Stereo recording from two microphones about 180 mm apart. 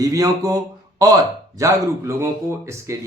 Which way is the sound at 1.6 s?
15° right (ahead or behind).